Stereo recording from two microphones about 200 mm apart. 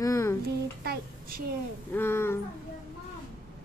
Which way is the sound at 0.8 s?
50° right (ahead or behind).